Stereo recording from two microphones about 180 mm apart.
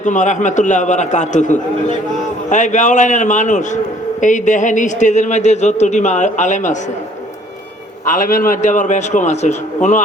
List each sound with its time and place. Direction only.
0.0 s a man's voice: 45° left (ahead or behind)
8.0 s a man's voice: 50° left (ahead or behind)